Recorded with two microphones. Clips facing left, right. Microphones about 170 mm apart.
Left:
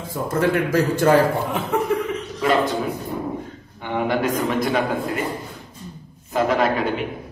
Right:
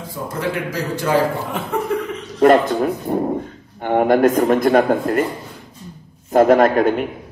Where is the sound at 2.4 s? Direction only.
55° right (ahead or behind).